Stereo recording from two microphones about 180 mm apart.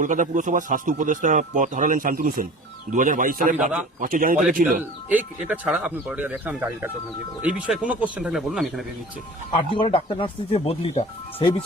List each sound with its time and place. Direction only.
0.0 s speech: 45° right (ahead or behind)
3.6 s speech: 5° right (ahead or behind)
4.0 s speech: 50° right (ahead or behind)
5.0 s speech: 5° right (ahead or behind)
9.7 s speech: 30° left (ahead or behind)